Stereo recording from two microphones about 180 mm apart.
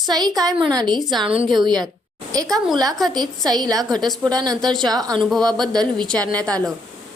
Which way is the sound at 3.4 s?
20° right (ahead or behind).